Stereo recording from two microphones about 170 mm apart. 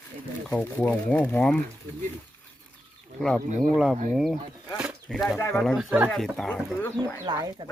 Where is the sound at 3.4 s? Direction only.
50° right (ahead or behind).